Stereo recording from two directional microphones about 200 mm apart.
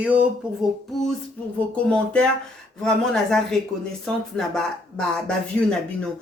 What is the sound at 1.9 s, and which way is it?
Speech, 5° left (ahead or behind).